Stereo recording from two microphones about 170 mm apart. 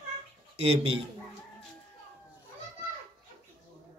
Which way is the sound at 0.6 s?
35° right (ahead or behind).